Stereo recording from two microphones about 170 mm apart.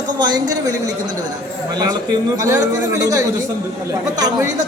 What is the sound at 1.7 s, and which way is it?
A man's voice, 20° right (ahead or behind).